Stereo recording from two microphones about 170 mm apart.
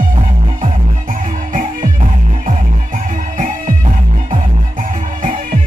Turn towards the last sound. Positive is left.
turn(degrees=-50)  # may be behind; listen again after turning